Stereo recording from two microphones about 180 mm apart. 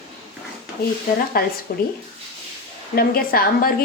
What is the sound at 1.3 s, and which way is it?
Speech, 55° left (ahead or behind).